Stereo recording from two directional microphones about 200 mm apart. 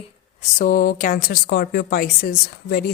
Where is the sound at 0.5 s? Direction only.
45° left (ahead or behind).